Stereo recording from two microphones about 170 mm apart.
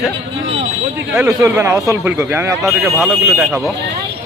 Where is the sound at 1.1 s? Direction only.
15° right (ahead or behind).